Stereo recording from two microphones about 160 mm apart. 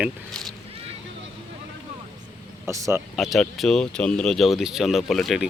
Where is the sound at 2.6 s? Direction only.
20° right (ahead or behind).